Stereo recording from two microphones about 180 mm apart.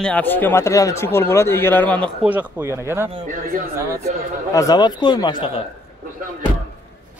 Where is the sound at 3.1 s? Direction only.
45° right (ahead or behind).